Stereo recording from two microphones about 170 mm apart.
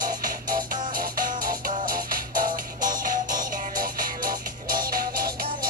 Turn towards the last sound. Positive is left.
turn(degrees=-60)  # may be behind; listen again after turning